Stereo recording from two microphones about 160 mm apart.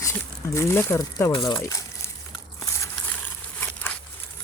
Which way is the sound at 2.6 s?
15° left (ahead or behind).